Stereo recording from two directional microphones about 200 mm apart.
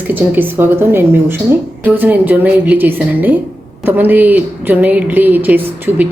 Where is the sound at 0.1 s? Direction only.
10° right (ahead or behind).